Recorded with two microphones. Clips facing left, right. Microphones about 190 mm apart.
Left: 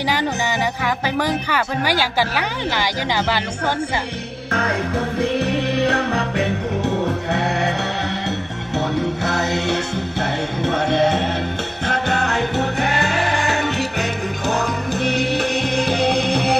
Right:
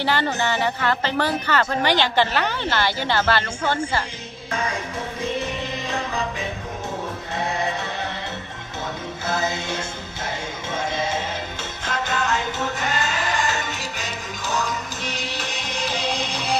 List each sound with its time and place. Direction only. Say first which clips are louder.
0.0 s speech: left 1 dB; 15° left (ahead or behind)
4.5 s music: left 5 dB; 60° left (ahead or behind)
8.7 s music: left 10 dB; 70° left (ahead or behind)